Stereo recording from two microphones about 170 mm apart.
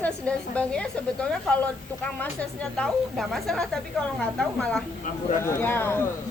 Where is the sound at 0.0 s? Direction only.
5° left (ahead or behind).